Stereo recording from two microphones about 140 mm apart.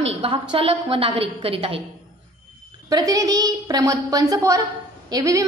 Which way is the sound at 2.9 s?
25° right (ahead or behind).